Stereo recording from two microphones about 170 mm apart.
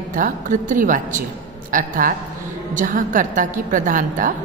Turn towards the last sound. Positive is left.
turn(degrees=-50)  # may be behind; listen again after turning